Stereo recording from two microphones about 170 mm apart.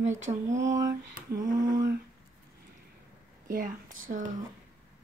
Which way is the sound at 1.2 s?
55° right (ahead or behind).